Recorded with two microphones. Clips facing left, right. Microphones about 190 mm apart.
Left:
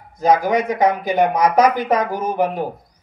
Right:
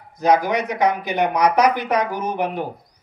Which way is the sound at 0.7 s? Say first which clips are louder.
Left 3 dB; 50° left (ahead or behind).